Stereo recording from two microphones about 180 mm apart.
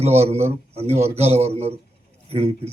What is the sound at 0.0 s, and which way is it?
Speech, 35° right (ahead or behind).